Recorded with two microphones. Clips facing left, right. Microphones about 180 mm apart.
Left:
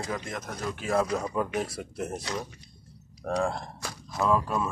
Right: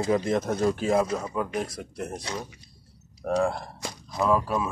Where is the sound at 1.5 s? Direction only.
5° left (ahead or behind).